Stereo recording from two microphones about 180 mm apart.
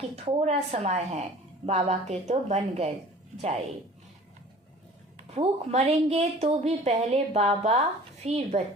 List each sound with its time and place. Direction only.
0.3 s a woman's voice: 35° right (ahead or behind)
5.1 s a woman's voice: 35° right (ahead or behind)